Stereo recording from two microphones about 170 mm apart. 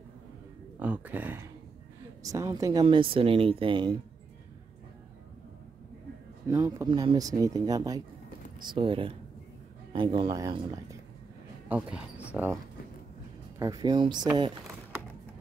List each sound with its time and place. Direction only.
0.7 s speech: 10° right (ahead or behind); by 3.9 s 30° right (ahead or behind)
6.4 s speech: 20° right (ahead or behind)
12.4 s speech: 5° right (ahead or behind)
13.6 s speech: 20° right (ahead or behind)